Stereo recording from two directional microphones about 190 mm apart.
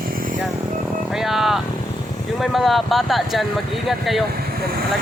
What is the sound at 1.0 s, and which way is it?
Speech, centre (ahead or behind).